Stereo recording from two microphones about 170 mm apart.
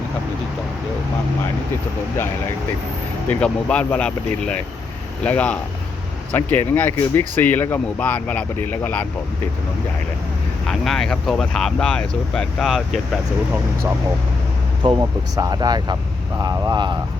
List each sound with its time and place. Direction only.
3.2 s speech: 5° left (ahead or behind)
10.7 s speech: centre (ahead or behind)
14.8 s speech: 20° right (ahead or behind)